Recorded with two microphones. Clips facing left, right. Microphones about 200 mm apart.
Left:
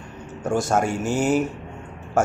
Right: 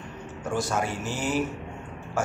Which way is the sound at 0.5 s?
50° left (ahead or behind).